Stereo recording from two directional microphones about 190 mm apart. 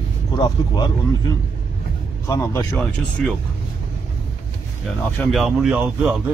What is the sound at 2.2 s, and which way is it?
Speech, 15° left (ahead or behind).